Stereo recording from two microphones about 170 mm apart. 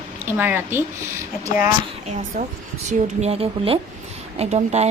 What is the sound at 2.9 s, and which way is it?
Speech, 40° right (ahead or behind).